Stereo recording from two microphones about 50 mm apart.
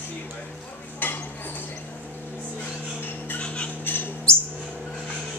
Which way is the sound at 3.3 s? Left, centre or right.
Left.